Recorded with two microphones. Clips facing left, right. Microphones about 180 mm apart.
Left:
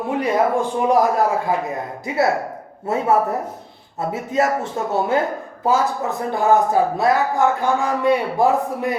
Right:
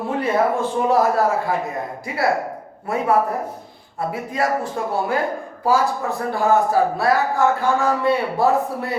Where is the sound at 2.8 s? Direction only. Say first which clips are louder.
Left 1 dB; 25° left (ahead or behind).